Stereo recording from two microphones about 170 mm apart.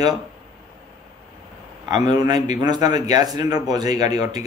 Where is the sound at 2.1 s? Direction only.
25° right (ahead or behind).